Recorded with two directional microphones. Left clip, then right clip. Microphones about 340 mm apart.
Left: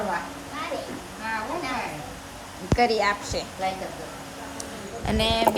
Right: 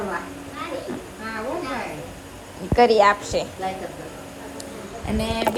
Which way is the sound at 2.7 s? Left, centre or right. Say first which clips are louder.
Right 7 dB; centre.